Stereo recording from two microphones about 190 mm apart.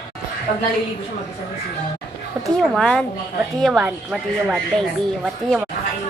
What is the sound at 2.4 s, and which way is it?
Speech, centre (ahead or behind).